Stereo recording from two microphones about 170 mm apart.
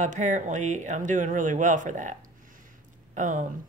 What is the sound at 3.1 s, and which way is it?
Speech, 50° right (ahead or behind).